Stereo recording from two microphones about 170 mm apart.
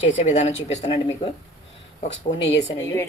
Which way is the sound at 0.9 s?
30° left (ahead or behind).